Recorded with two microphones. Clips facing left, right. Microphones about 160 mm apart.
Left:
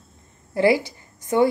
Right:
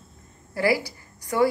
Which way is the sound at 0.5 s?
20° left (ahead or behind).